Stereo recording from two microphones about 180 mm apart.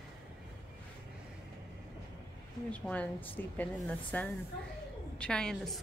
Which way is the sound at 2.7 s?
5° left (ahead or behind).